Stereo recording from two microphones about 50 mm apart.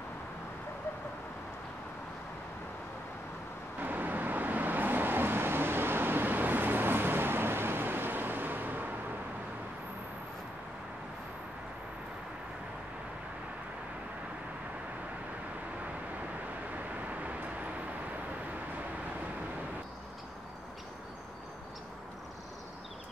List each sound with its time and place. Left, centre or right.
3.8 s vehicle: right
16.7 s vehicle: right